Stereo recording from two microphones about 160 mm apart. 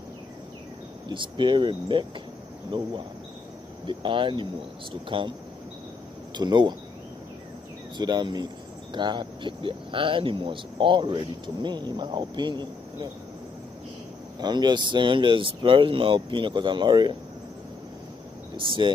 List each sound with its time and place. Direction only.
1.0 s speech: 30° right (ahead or behind)
6.3 s speech: 30° right (ahead or behind)
8.0 s speech: 25° right (ahead or behind)
14.4 s speech: 25° right (ahead or behind)